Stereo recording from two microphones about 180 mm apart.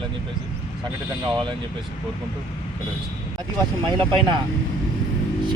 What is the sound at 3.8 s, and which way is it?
Speech, 25° right (ahead or behind).